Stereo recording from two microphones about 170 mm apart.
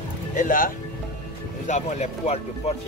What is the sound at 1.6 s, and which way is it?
Speech, 45° left (ahead or behind).